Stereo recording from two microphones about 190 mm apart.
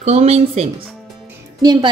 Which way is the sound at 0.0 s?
35° right (ahead or behind).